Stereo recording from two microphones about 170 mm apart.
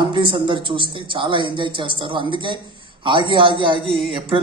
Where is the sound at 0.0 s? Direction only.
30° right (ahead or behind).